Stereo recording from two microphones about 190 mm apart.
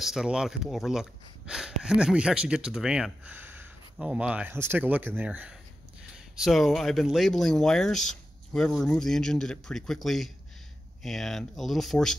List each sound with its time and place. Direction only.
0.0 s speech: centre (ahead or behind)